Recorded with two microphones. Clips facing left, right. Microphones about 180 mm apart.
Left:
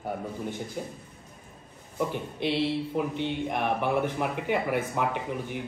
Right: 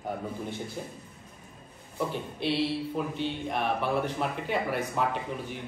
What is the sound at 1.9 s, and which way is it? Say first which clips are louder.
Speech: left 2 dB; 15° left (ahead or behind).